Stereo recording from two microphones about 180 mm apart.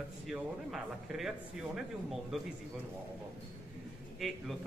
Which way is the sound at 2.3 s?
5° right (ahead or behind).